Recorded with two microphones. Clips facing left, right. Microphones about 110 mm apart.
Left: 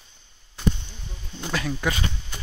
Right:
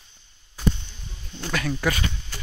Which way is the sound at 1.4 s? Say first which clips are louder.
Right 1 dB; 20° left (ahead or behind).